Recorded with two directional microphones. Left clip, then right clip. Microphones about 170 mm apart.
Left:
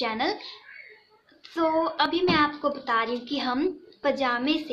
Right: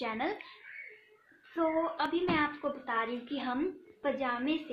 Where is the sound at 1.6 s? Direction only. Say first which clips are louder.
Left 7 dB; centre (ahead or behind).